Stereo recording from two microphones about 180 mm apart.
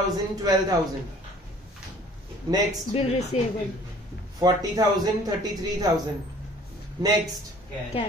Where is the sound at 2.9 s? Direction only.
35° left (ahead or behind).